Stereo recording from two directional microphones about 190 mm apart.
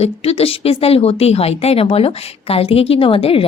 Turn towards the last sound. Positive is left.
turn(degrees=30)  # may be behind; listen again after turning